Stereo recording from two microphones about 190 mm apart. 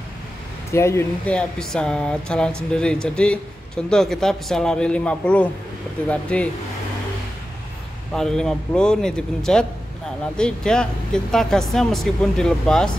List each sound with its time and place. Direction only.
0.7 s speech: 15° left (ahead or behind)
8.1 s speech: centre (ahead or behind)